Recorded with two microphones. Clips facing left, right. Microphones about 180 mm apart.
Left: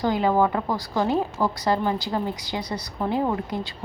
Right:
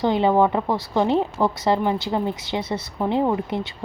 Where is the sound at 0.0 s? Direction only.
25° right (ahead or behind).